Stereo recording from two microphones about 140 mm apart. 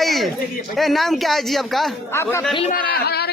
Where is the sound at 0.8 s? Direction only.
Centre (ahead or behind).